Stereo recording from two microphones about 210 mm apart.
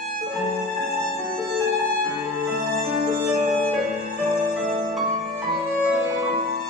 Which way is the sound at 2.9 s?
40° right (ahead or behind).